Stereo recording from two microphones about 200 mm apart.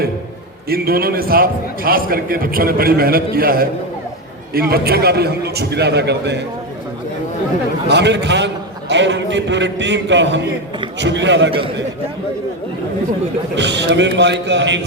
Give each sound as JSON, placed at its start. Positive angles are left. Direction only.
{"t": 0.7, "sound": "a man's voice", "side_deg": -50}
{"t": 7.9, "sound": "a man's voice", "side_deg": -60}
{"t": 13.6, "sound": "a man's voice", "side_deg": -60}